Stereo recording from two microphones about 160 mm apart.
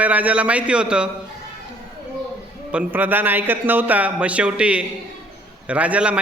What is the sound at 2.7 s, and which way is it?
A man's voice, 10° right (ahead or behind).